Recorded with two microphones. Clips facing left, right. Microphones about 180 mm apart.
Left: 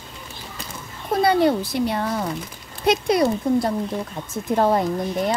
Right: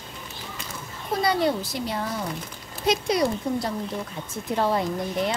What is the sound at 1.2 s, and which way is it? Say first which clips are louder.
A woman's voice: left 6 dB; 55° left (ahead or behind).